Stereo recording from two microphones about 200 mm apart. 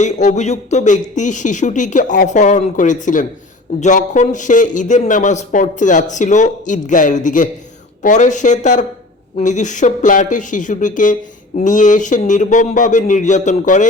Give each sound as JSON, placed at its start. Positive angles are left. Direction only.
{"t": 0.0, "sound": "speech", "side_deg": 35}